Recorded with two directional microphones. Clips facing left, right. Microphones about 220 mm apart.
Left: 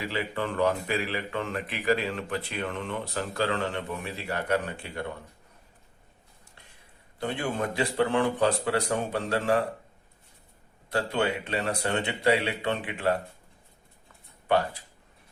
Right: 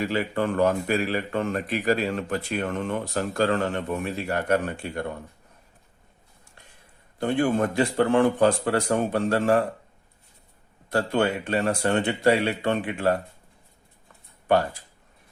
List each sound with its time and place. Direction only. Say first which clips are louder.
0.0 s speech: right 6 dB; 45° right (ahead or behind)
7.2 s speech: right 7 dB; 50° right (ahead or behind)
10.9 s speech: right 4 dB; 45° right (ahead or behind)